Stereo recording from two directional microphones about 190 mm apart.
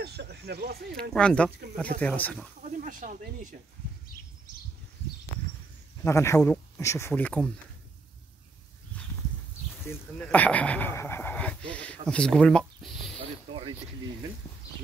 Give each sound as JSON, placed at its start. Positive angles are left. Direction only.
{"t": 0.0, "sound": "a sound", "side_deg": -60}
{"t": 1.1, "sound": "speech", "side_deg": 5}
{"t": 2.6, "sound": "speech", "side_deg": -40}
{"t": 6.0, "sound": "speech", "side_deg": 15}
{"t": 8.9, "sound": "a sound", "side_deg": 10}
{"t": 9.8, "sound": "speech", "side_deg": 5}